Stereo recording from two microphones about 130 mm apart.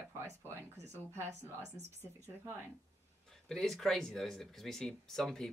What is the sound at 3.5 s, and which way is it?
Speech, 5° left (ahead or behind).